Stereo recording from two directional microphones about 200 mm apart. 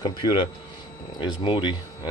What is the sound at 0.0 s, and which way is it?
Speech, 25° left (ahead or behind).